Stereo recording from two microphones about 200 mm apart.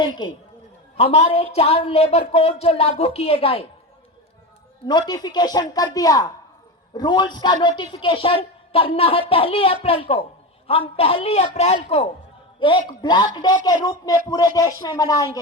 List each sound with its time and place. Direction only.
0.9 s speech: 35° left (ahead or behind)
4.9 s a woman's voice: 20° left (ahead or behind)